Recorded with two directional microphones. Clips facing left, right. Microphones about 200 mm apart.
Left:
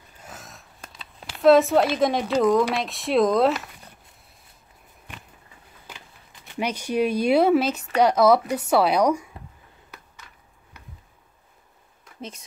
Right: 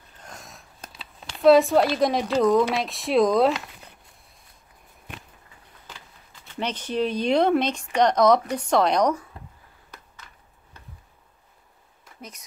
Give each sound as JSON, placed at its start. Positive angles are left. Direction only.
{"t": 0.2, "sound": "speech", "side_deg": 5}
{"t": 5.9, "sound": "speech", "side_deg": 15}
{"t": 12.2, "sound": "speech", "side_deg": 30}